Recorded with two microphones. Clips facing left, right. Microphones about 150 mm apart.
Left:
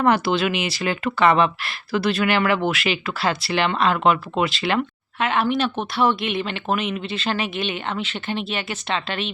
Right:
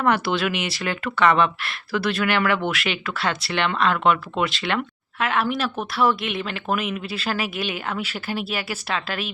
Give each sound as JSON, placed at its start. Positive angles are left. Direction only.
{"t": 0.3, "sound": "speech", "side_deg": 0}